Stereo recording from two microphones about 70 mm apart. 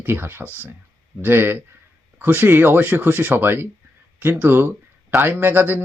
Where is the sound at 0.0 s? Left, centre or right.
Right.